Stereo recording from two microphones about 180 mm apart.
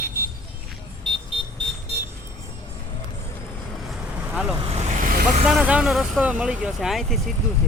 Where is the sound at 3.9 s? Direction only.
5° right (ahead or behind).